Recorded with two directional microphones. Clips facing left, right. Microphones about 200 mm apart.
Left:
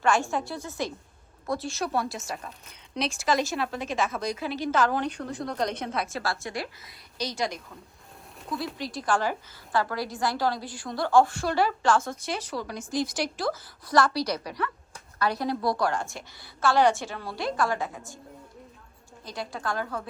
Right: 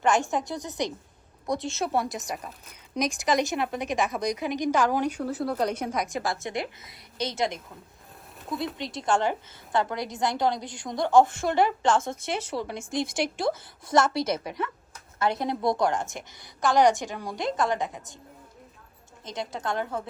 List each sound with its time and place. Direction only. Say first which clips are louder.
0.0 s a woman's voice: right 1 dB; 20° right (ahead or behind)
8.8 s a woman's voice: right 2 dB; 25° right (ahead or behind)
19.2 s a woman's voice: right 1 dB; 20° right (ahead or behind)